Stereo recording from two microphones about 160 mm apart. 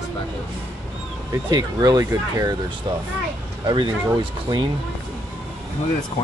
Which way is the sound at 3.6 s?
30° right (ahead or behind).